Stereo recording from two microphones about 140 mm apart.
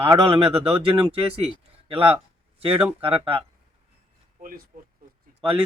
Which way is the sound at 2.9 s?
40° right (ahead or behind).